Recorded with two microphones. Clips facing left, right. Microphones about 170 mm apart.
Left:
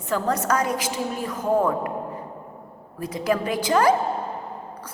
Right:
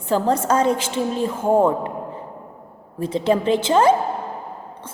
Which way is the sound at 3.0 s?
25° right (ahead or behind).